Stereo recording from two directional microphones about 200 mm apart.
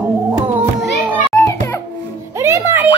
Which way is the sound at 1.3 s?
15° left (ahead or behind).